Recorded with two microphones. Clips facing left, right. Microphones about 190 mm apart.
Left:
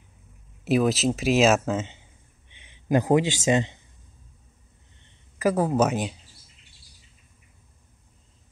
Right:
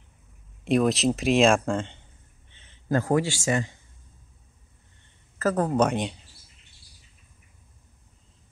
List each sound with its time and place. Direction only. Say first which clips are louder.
0.7 s speech: even; 5° left (ahead or behind); by 3.8 s 20° left (ahead or behind)
5.4 s speech: left 1 dB; 10° left (ahead or behind)